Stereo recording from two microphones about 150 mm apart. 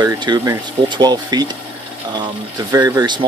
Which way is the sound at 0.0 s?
30° right (ahead or behind).